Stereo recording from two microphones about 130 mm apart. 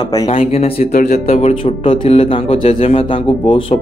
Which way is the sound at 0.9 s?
65° left (ahead or behind).